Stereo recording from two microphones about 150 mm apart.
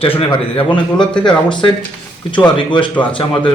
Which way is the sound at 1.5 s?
30° left (ahead or behind).